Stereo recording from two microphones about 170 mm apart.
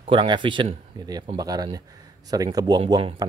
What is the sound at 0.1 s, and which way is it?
Speech, 30° right (ahead or behind).